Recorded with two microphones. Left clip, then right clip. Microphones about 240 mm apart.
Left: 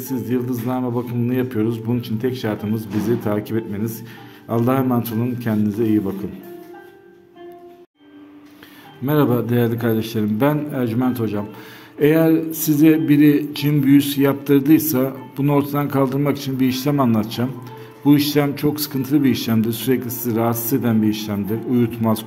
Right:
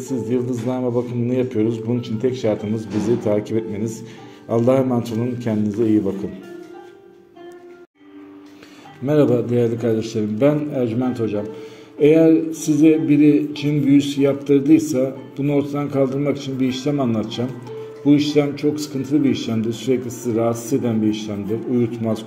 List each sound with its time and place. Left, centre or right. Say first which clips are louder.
0.1 s speech: right 1 dB; centre
9.0 s speech: right 2 dB; centre